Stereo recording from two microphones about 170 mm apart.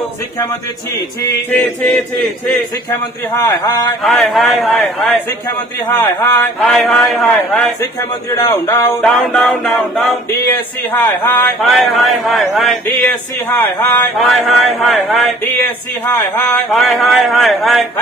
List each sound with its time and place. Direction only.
1.5 s a man's voice: 5° left (ahead or behind)
4.0 s a man's voice: centre (ahead or behind)
5.9 s a man's voice: 10° left (ahead or behind)
6.7 s a man's voice: centre (ahead or behind)
8.3 s a man's voice: 25° left (ahead or behind)
9.0 s a man's voice: 5° left (ahead or behind)
11.6 s a man's voice: centre (ahead or behind)
14.2 s a man's voice: centre (ahead or behind)
15.4 s a man's voice: 15° left (ahead or behind)
16.7 s a man's voice: centre (ahead or behind)